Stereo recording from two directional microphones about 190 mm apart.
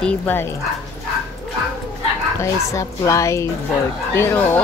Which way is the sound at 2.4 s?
15° left (ahead or behind).